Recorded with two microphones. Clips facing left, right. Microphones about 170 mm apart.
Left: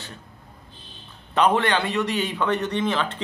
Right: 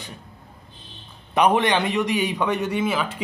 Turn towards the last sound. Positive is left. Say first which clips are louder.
# right 1 dB
turn(degrees=-10)  # may be behind; listen again after turning